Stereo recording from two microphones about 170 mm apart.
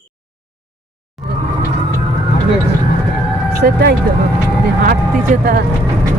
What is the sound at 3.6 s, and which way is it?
Speech, 70° right (ahead or behind).